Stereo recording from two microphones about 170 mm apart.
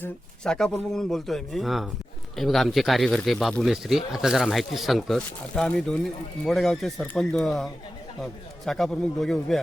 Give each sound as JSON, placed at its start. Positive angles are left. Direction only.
{"t": 0.0, "sound": "speech", "side_deg": 5}